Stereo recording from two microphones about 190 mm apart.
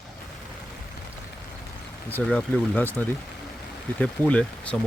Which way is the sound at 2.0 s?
10° left (ahead or behind).